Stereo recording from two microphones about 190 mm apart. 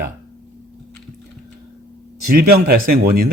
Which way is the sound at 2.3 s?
50° right (ahead or behind).